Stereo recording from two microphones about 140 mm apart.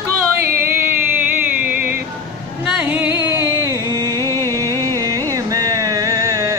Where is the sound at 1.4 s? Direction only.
10° right (ahead or behind).